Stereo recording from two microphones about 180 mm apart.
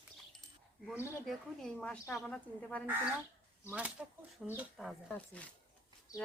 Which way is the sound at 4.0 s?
10° right (ahead or behind).